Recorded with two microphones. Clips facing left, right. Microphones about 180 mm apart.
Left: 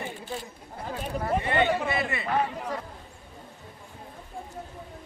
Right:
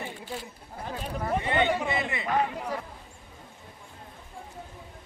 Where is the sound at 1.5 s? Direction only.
15° right (ahead or behind).